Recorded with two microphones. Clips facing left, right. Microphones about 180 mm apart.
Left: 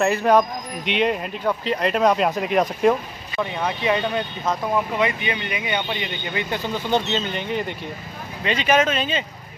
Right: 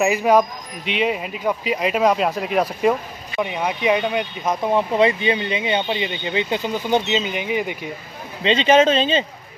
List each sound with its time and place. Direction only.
0.0 s speech: 10° right (ahead or behind)
3.3 s speech: 15° right (ahead or behind)
8.5 s speech: 25° right (ahead or behind)